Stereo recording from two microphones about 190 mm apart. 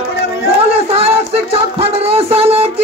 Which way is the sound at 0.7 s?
30° right (ahead or behind).